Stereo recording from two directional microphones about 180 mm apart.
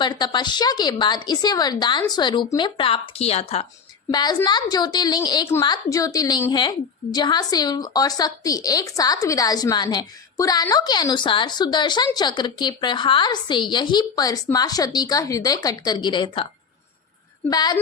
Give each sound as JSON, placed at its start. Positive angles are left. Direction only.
{"t": 0.0, "sound": "a woman's voice", "side_deg": 25}
{"t": 4.1, "sound": "a woman's voice", "side_deg": 25}
{"t": 17.5, "sound": "a woman's voice", "side_deg": 20}